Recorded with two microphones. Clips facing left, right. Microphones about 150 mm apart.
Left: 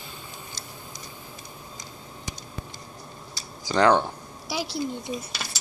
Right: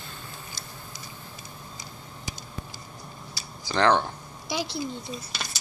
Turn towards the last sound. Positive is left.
turn(degrees=10)  # may be behind; listen again after turning